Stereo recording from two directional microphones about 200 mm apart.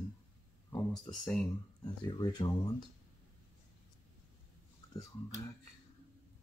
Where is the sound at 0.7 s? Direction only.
15° left (ahead or behind).